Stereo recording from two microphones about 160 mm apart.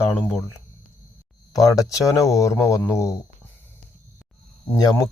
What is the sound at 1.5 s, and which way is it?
Speech, 20° left (ahead or behind).